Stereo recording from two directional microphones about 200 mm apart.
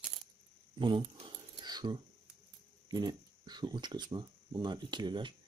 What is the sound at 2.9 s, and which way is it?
Speech, 20° right (ahead or behind).